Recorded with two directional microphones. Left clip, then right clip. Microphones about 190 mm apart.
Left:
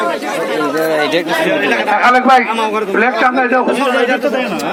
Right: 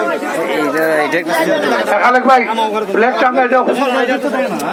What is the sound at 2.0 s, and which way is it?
A man's voice, 15° left (ahead or behind).